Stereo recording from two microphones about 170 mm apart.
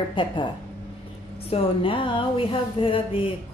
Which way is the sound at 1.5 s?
30° left (ahead or behind).